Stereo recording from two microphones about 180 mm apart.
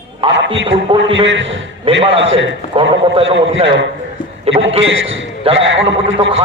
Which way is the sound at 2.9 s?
30° right (ahead or behind).